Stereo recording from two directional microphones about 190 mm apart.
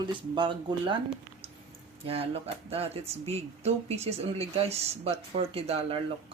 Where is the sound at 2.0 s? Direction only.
30° right (ahead or behind).